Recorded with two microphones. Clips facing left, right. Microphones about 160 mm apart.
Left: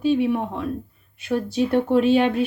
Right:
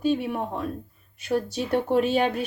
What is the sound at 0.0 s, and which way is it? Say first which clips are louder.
Speech: left 5 dB; 40° right (ahead or behind).